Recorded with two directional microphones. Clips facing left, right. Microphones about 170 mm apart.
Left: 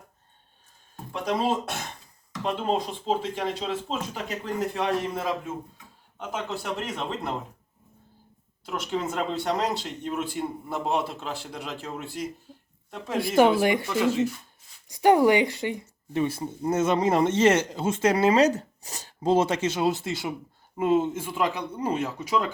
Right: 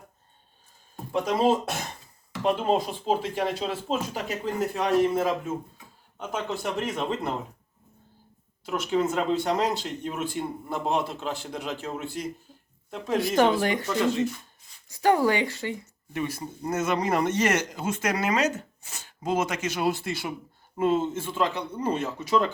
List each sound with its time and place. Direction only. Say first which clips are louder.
1.2 s speech: right 3 dB; centre (ahead or behind)
8.6 s speech: right 4 dB; centre (ahead or behind)